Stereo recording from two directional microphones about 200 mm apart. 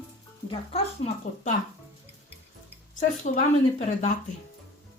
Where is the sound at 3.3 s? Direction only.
45° left (ahead or behind).